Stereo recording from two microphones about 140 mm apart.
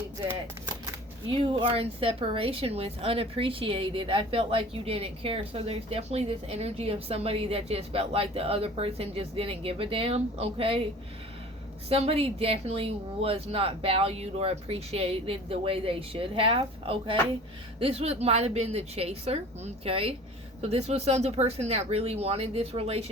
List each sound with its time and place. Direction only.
1.5 s a woman's voice: 40° right (ahead or behind)
11.9 s a woman's voice: 45° right (ahead or behind)